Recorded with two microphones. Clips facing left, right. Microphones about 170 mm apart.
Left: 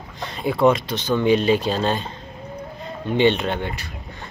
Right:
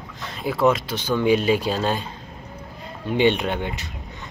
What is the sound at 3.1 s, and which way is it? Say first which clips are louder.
Speech: left 1 dB; 10° right (ahead or behind).